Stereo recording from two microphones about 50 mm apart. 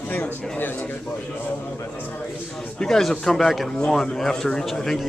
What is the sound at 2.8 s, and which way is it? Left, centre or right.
Speech, centre.